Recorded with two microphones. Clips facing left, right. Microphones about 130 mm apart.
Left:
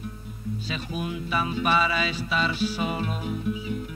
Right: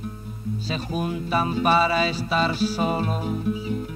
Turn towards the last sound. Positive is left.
turn(degrees=-35)  # may be behind; listen again after turning